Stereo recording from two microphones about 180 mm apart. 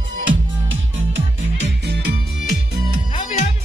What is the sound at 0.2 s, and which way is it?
Music, 90° right.